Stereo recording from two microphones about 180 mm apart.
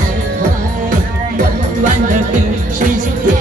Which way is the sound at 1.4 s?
45° right (ahead or behind).